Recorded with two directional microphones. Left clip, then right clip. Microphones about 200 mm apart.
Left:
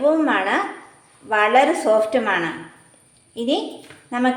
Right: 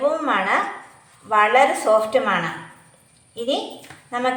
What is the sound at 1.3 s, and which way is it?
A woman's voice, 35° left (ahead or behind).